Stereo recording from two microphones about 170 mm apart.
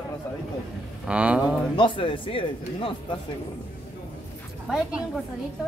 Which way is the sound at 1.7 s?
30° left (ahead or behind).